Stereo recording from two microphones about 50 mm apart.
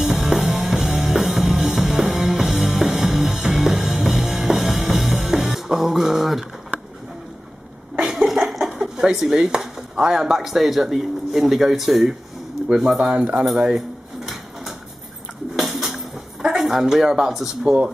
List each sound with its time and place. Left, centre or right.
0.0 s music: centre
8.5 s a sound: centre
8.8 s speech: centre
13.1 s speech: right
13.7 s drawer open or close: centre
15.5 s a sound: centre
16.4 s speech: centre